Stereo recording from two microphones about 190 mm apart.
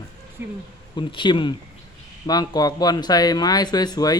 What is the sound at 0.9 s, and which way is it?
Speech, 25° left (ahead or behind).